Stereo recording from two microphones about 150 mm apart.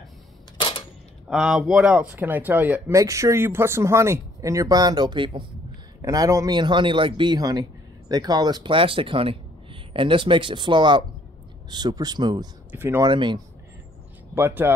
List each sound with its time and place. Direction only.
0.6 s a sound: 35° left (ahead or behind)
1.3 s speech: 5° right (ahead or behind); by 5.4 s 30° right (ahead or behind)
6.0 s speech: 20° right (ahead or behind)
12.7 s speech: 15° right (ahead or behind)
13.0 s speech: 30° right (ahead or behind)
14.3 s speech: 15° right (ahead or behind)